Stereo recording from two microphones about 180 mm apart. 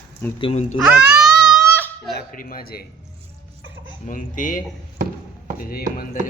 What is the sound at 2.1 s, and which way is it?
Speech, 50° left (ahead or behind).